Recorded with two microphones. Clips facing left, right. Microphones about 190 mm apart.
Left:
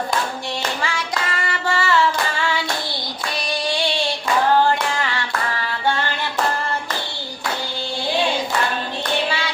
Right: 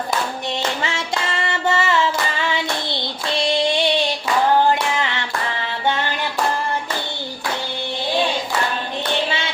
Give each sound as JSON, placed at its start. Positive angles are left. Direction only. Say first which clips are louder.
{"t": 0.8, "sound": "clapping", "louder": "right 1 dB", "side_deg": -25}
{"t": 2.4, "sound": "singing", "louder": "right 1 dB", "side_deg": -20}